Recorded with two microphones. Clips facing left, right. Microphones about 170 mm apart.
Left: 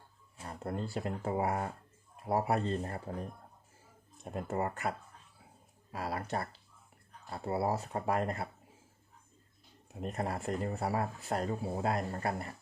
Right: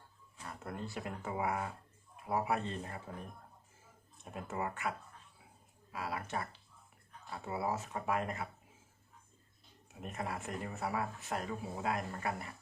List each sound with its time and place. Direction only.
0.3 s speech: 30° left (ahead or behind)
4.2 s speech: 40° left (ahead or behind)
9.9 s speech: 35° left (ahead or behind)